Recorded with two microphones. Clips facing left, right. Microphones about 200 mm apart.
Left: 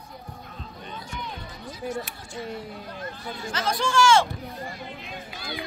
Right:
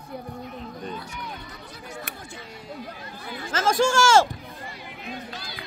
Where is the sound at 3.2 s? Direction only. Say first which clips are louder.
Right 5 dB; 50° right (ahead or behind).